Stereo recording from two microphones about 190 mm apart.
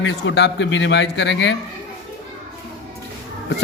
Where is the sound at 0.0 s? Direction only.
70° left (ahead or behind).